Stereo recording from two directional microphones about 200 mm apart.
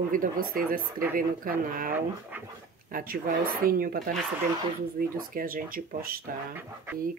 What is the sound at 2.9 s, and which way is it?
Speech, 45° right (ahead or behind).